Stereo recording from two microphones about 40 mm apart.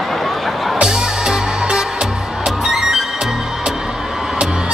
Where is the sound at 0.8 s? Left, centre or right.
Centre.